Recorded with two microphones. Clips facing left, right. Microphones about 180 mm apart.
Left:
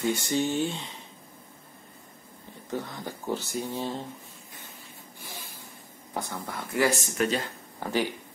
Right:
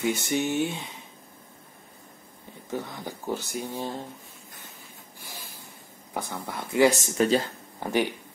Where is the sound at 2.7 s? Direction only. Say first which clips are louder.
Even; 15° right (ahead or behind).